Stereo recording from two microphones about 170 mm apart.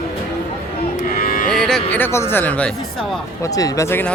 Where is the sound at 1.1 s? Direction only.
55° left (ahead or behind).